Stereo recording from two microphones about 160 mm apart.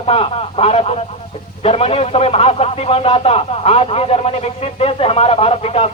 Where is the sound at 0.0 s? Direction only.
35° left (ahead or behind).